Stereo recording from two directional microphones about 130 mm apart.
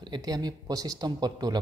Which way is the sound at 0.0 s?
35° right (ahead or behind).